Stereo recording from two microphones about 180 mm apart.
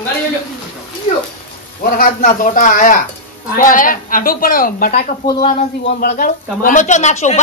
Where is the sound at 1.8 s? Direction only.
50° left (ahead or behind).